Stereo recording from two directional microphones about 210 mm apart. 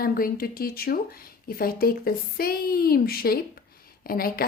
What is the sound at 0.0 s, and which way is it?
Speech, 45° left (ahead or behind).